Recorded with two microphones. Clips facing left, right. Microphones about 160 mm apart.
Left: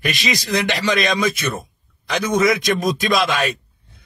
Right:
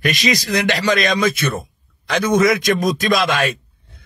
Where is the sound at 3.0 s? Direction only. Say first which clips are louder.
Right 1 dB; 50° right (ahead or behind).